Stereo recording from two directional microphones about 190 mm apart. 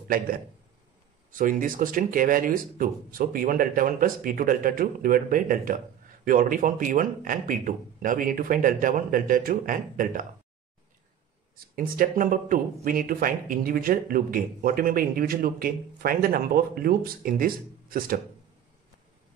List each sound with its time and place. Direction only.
1.3 s speech: 45° right (ahead or behind)
11.5 s speech: 50° right (ahead or behind)